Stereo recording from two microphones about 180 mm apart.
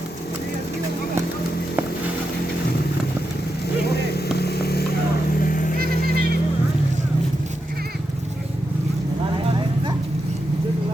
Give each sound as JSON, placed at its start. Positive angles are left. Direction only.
{"t": 3.8, "sound": "vehicle", "side_deg": 65}
{"t": 5.4, "sound": "vehicle", "side_deg": 50}
{"t": 5.7, "sound": "vehicle", "side_deg": -55}